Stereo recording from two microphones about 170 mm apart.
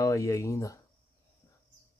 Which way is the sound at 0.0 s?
20° left (ahead or behind).